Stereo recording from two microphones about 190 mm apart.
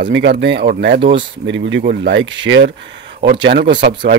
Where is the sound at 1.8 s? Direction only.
60° right (ahead or behind).